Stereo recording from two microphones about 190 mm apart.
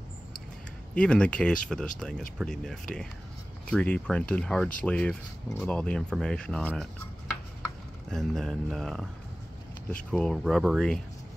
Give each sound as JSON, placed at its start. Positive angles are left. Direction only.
{"t": 0.9, "sound": "speech", "side_deg": 5}
{"t": 8.1, "sound": "speech", "side_deg": 0}
{"t": 10.1, "sound": "speech", "side_deg": 0}